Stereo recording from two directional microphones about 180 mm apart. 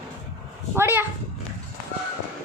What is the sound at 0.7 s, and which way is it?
Speech, 10° right (ahead or behind).